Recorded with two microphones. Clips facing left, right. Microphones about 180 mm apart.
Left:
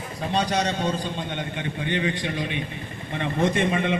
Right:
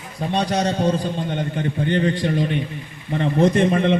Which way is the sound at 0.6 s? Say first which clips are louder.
Right 5 dB; 35° right (ahead or behind).